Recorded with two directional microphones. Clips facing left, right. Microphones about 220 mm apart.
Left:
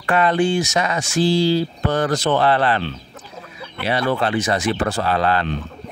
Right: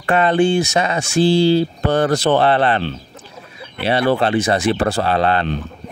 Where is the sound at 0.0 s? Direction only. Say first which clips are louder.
Right 3 dB; 25° right (ahead or behind).